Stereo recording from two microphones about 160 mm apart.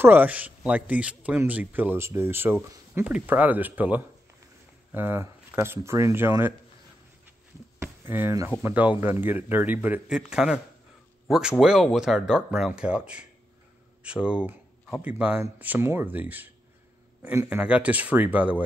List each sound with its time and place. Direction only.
0.0 s speech: 10° right (ahead or behind)
7.8 s a sound: 15° right (ahead or behind)
8.6 s speech: 10° right (ahead or behind)